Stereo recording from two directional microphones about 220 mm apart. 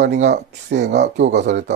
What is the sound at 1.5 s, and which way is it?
Speech, 35° right (ahead or behind).